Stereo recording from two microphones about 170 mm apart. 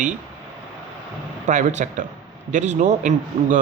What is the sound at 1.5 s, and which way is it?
Speech, 45° right (ahead or behind).